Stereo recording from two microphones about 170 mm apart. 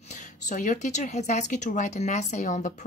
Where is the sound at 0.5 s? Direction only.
45° left (ahead or behind).